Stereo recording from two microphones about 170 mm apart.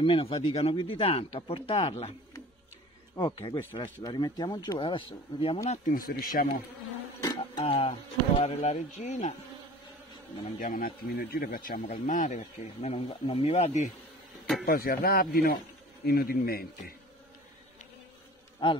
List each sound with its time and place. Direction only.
0.0 s speech: 35° left (ahead or behind)
3.2 s speech: 30° left (ahead or behind)
5.7 s speech: 50° left (ahead or behind)
7.2 s insect: 25° left (ahead or behind)
7.6 s speech: 30° left (ahead or behind)
10.4 s speech: 50° left (ahead or behind)
14.6 s speech: 65° left (ahead or behind)